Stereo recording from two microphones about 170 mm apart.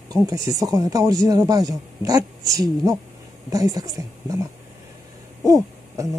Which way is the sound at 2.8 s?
20° right (ahead or behind).